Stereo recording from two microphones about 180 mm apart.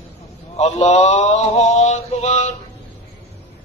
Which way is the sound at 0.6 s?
35° left (ahead or behind).